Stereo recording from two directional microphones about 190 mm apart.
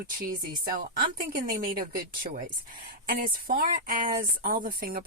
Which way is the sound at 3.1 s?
50° right (ahead or behind).